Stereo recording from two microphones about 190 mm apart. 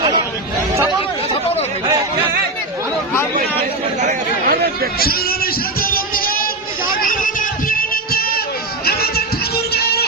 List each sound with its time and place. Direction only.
4.0 s chatter: 50° right (ahead or behind)
4.9 s music: 50° left (ahead or behind)